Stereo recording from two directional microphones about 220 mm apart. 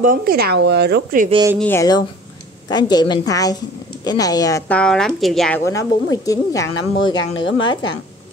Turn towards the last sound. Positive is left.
turn(degrees=20)  # may be behind; listen again after turning